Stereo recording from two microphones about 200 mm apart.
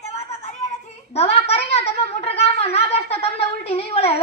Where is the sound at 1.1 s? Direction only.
30° left (ahead or behind).